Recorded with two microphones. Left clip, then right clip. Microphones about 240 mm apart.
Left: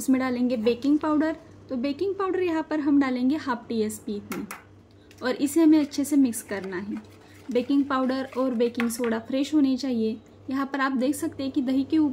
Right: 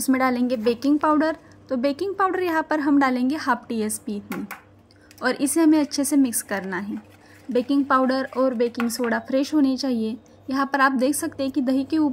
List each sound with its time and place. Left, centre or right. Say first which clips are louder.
0.1 s a woman's voice: right 4 dB; right
5.2 s a woman's voice: right 2 dB; right